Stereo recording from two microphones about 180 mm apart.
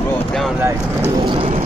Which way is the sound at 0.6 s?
15° right (ahead or behind).